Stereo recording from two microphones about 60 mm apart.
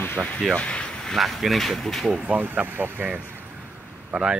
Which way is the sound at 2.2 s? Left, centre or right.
Right.